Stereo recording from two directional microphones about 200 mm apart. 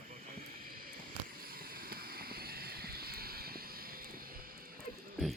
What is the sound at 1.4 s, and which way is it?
Vehicle, 45° right (ahead or behind).